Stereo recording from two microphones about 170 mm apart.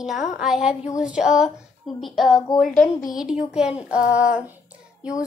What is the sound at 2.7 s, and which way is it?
Speech, 50° left (ahead or behind).